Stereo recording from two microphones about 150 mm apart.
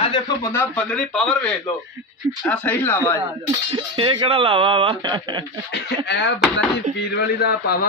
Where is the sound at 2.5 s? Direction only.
10° left (ahead or behind).